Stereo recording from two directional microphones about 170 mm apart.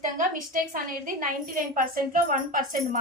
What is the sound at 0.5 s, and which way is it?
A woman's voice, 55° right (ahead or behind).